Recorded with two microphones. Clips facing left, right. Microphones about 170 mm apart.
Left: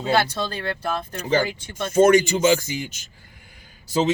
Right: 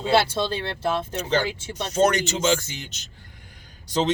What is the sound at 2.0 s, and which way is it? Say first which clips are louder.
Speech: left 6 dB; 10° left (ahead or behind).